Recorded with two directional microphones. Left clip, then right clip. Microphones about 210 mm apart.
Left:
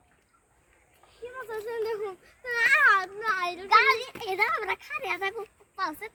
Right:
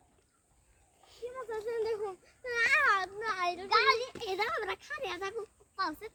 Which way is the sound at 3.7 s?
35° left (ahead or behind).